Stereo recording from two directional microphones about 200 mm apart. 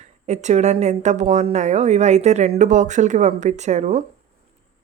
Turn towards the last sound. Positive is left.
turn(degrees=-35)  # may be behind; listen again after turning